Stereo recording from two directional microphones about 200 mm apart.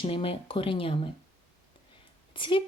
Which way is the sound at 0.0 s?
25° left (ahead or behind).